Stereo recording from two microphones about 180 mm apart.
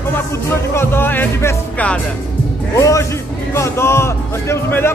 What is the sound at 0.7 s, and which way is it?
A man's voice, 10° left (ahead or behind).